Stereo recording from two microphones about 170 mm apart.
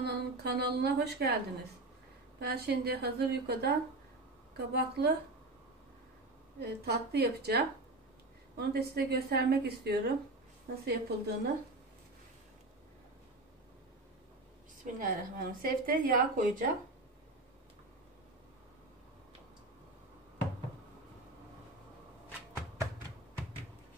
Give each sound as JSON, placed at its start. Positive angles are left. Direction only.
{"t": 0.0, "sound": "a woman's voice", "side_deg": -70}
{"t": 6.6, "sound": "a woman's voice", "side_deg": -70}
{"t": 15.0, "sound": "a woman's voice", "side_deg": -55}